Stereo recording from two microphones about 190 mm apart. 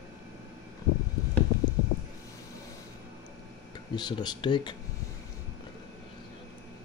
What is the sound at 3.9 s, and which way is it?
Speech, 20° left (ahead or behind).